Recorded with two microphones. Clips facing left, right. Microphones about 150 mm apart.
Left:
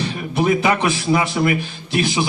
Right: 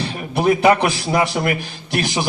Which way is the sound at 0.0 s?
35° right (ahead or behind).